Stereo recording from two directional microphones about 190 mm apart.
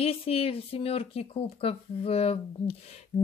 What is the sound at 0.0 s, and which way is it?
Speech, 30° left (ahead or behind).